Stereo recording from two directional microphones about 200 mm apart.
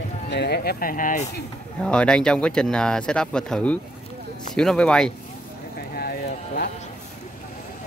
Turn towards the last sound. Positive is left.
turn(degrees=50)  # may be behind; listen again after turning